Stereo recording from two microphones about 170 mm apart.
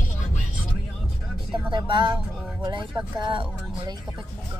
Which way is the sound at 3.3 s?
30° right (ahead or behind).